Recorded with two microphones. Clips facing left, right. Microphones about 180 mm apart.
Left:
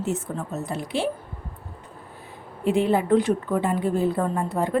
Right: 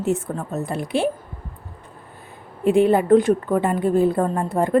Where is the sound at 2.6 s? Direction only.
55° right (ahead or behind).